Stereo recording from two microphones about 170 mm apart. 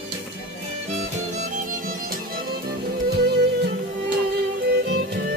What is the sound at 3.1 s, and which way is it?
Music, 65° right (ahead or behind).